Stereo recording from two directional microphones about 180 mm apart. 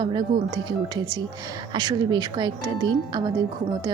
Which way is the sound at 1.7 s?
25° right (ahead or behind).